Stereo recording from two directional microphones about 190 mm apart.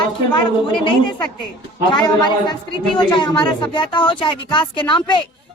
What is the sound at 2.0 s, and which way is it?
A woman's voice, 20° left (ahead or behind).